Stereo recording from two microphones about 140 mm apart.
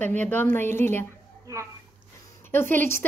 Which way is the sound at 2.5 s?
15° left (ahead or behind).